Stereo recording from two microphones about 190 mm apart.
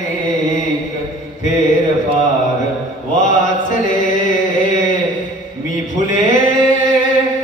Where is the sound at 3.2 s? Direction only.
45° left (ahead or behind).